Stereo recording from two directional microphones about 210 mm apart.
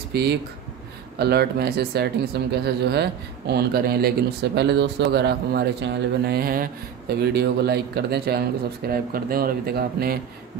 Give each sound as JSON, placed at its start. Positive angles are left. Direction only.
{"t": 0.1, "sound": "speech", "side_deg": -50}